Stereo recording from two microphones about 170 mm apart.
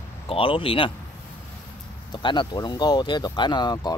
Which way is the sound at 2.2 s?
25° left (ahead or behind).